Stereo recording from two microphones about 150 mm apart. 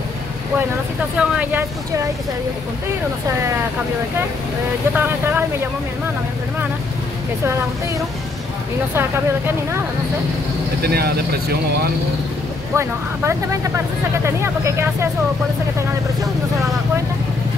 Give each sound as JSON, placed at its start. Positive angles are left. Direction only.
{"t": 1.1, "sound": "speech", "side_deg": -10}
{"t": 4.9, "sound": "speech", "side_deg": -10}
{"t": 10.8, "sound": "speech", "side_deg": -90}
{"t": 12.7, "sound": "speech", "side_deg": -15}